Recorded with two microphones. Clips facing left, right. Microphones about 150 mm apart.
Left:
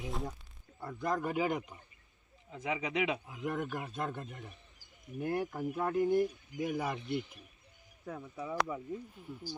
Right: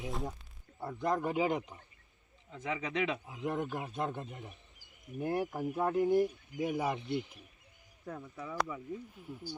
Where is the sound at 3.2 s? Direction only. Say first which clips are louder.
Right 1 dB; 25° right (ahead or behind).